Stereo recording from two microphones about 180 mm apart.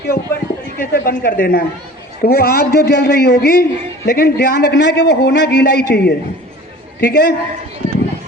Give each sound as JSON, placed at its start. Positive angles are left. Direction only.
{"t": 0.0, "sound": "a woman's voice", "side_deg": 55}
{"t": 3.3, "sound": "a man's voice", "side_deg": 55}